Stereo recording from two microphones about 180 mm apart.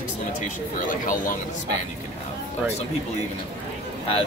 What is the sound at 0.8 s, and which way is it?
Speech, 45° left (ahead or behind).